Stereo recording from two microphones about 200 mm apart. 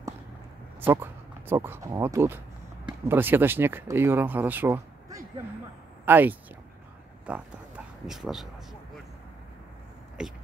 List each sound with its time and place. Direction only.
0.7 s speech: 10° right (ahead or behind)
10.2 s speech: 5° right (ahead or behind)